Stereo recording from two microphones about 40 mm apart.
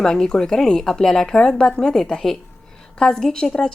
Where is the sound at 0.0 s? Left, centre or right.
Centre.